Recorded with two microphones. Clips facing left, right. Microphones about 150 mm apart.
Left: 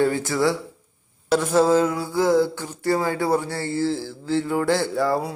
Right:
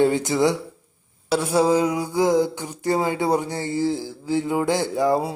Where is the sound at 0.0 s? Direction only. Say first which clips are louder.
Right 2 dB; 20° right (ahead or behind).